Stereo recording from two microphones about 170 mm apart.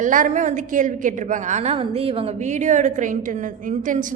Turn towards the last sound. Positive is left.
turn(degrees=-50)  # may be behind; listen again after turning